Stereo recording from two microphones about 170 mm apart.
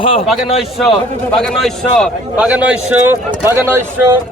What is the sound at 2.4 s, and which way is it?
A man's voice, 10° right (ahead or behind).